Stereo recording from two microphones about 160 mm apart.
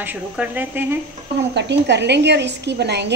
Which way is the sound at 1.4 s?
90° right.